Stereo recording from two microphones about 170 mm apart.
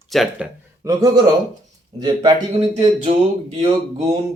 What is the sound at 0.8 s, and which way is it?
Speech, 20° right (ahead or behind).